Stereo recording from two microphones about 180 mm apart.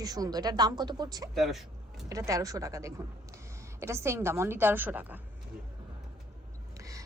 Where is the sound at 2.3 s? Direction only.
20° right (ahead or behind).